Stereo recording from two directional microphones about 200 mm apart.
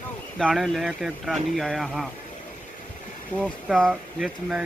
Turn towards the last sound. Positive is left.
turn(degrees=0)  # may be behind; listen again after turning